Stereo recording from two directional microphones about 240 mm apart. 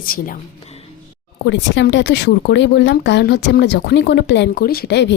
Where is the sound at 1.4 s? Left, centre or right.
Left.